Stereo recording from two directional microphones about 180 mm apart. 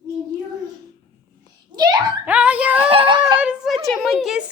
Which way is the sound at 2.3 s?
10° right (ahead or behind).